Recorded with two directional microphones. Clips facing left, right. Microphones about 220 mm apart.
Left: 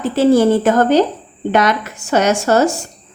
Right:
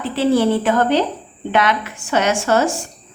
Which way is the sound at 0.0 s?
45° left (ahead or behind).